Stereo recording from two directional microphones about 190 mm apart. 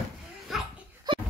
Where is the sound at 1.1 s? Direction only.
20° right (ahead or behind).